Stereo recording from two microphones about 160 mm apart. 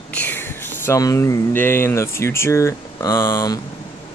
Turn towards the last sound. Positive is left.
turn(degrees=20)  # may be behind; listen again after turning